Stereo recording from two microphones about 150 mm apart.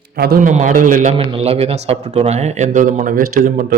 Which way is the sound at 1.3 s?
45° right (ahead or behind).